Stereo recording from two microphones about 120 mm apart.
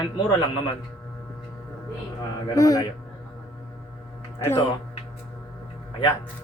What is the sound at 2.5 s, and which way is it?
Speech, 30° left (ahead or behind).